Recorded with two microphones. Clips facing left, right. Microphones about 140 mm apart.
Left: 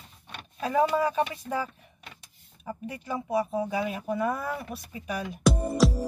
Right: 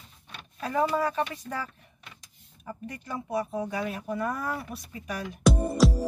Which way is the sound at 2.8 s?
10° left (ahead or behind).